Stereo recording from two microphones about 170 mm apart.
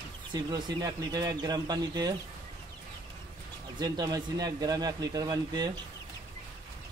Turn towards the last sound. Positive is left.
turn(degrees=-25)  # may be behind; listen again after turning